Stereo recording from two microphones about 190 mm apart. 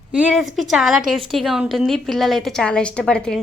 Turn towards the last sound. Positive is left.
turn(degrees=5)  # may be behind; listen again after turning